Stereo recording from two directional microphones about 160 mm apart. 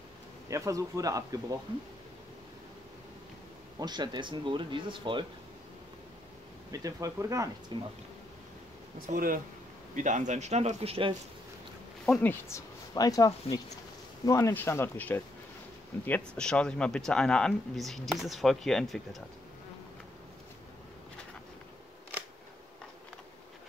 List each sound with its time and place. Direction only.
0.5 s speech: 20° right (ahead or behind)
3.8 s speech: 25° right (ahead or behind)
6.7 s speech: 20° right (ahead or behind)
9.1 s speech: 60° right (ahead or behind)
9.9 s speech: 50° right (ahead or behind)
12.1 s speech: 10° left (ahead or behind)